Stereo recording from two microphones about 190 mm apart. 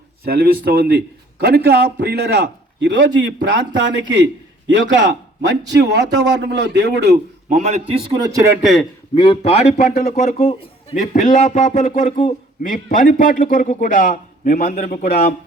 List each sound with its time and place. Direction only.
0.3 s a man's voice: 50° right (ahead or behind)
7.5 s a man's voice: 35° right (ahead or behind)
8.2 s a man's voice: 15° right (ahead or behind)
8.6 s a man's voice: centre (ahead or behind)
9.1 s a man's voice: 25° left (ahead or behind); by 15.2 s 45° left (ahead or behind)